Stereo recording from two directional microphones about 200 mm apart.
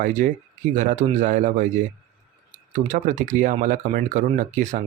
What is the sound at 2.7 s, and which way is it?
Speech, 40° right (ahead or behind).